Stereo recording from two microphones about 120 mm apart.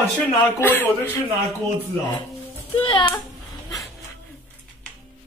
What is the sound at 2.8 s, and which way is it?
Speech, 45° left (ahead or behind).